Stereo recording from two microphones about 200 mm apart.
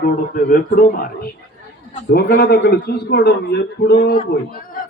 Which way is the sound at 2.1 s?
50° left (ahead or behind).